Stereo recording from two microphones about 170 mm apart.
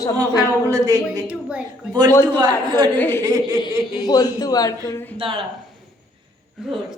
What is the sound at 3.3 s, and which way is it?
Speech, 25° right (ahead or behind).